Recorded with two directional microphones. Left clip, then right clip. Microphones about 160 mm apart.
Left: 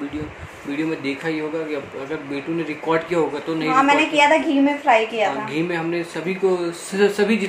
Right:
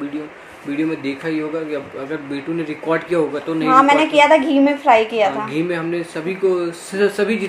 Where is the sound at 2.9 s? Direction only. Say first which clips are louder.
Right 2 dB; 10° right (ahead or behind).